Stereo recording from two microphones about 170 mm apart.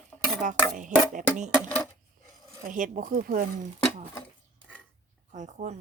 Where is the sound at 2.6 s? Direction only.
50° right (ahead or behind).